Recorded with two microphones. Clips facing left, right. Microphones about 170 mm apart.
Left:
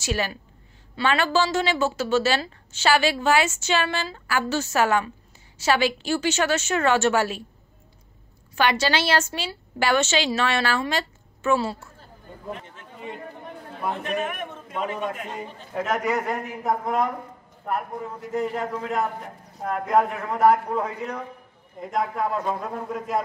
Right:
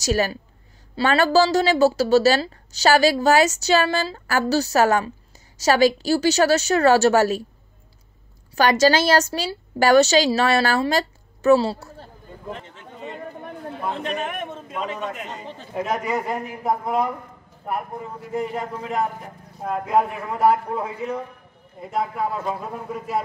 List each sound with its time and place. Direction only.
0.0 s a woman's voice: 40° right (ahead or behind)
8.5 s a woman's voice: 40° right (ahead or behind)
13.9 s a man's voice: 25° right (ahead or behind)
14.8 s a man's voice: 10° left (ahead or behind)
15.7 s a man's voice: 15° right (ahead or behind)
18.3 s a man's voice: 10° right (ahead or behind)